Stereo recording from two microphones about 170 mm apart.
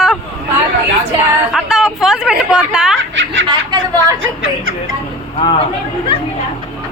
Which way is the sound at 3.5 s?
25° right (ahead or behind).